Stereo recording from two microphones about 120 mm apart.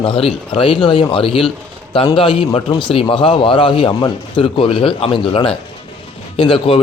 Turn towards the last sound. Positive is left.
turn(degrees=50)  # may be behind; listen again after turning